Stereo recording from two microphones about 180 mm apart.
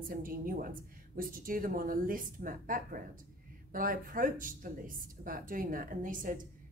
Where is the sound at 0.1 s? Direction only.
50° right (ahead or behind).